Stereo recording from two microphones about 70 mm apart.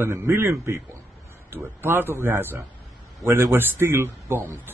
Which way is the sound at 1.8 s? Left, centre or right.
Right.